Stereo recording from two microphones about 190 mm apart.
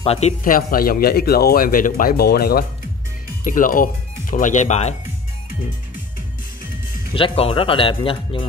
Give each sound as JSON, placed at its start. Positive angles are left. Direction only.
{"t": 0.0, "sound": "speech", "side_deg": 30}
{"t": 0.4, "sound": "speech", "side_deg": 45}
{"t": 7.2, "sound": "speech", "side_deg": 30}